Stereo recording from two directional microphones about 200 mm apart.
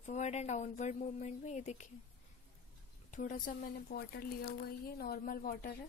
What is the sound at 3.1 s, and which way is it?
Speech, 40° left (ahead or behind).